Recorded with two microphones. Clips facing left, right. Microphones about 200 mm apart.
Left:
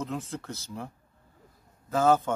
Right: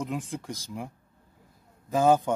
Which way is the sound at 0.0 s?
15° right (ahead or behind).